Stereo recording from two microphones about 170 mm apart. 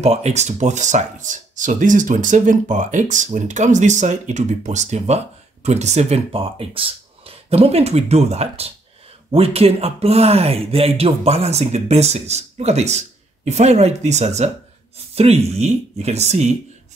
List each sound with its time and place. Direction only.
0.0 s speech: 40° right (ahead or behind)